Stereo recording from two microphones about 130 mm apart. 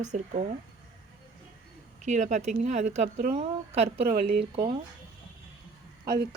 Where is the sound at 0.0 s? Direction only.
65° right (ahead or behind).